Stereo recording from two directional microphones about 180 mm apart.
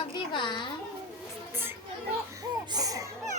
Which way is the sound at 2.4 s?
20° right (ahead or behind).